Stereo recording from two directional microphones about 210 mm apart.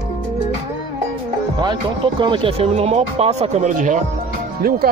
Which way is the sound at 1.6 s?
20° right (ahead or behind).